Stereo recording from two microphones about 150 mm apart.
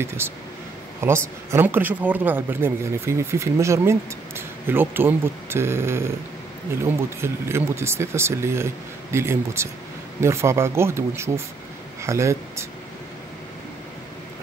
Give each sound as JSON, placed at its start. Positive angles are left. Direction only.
{"t": 0.2, "sound": "speech", "side_deg": -15}